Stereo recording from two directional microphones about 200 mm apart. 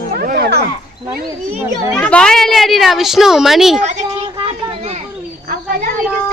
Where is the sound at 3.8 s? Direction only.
35° right (ahead or behind).